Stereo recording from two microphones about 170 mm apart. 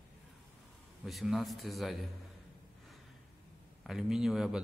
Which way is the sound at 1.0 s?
Centre (ahead or behind).